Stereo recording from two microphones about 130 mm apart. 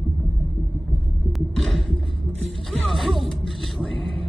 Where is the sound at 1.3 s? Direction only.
Centre (ahead or behind).